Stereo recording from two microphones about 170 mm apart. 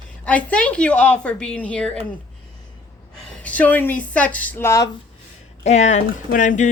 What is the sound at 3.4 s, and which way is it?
A woman's voice, 10° left (ahead or behind).